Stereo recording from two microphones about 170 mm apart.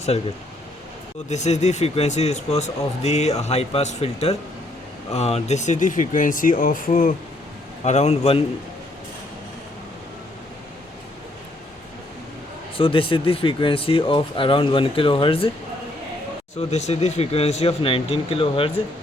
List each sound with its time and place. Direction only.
1.3 s a man's voice: 40° left (ahead or behind)
7.9 s a man's voice: 40° left (ahead or behind)
12.7 s a man's voice: 30° left (ahead or behind)
16.6 s a man's voice: 40° left (ahead or behind)